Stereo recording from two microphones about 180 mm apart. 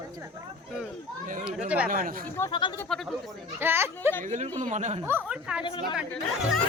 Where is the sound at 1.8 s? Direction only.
50° right (ahead or behind).